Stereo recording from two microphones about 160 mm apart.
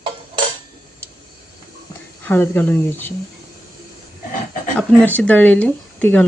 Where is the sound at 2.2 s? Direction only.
10° left (ahead or behind).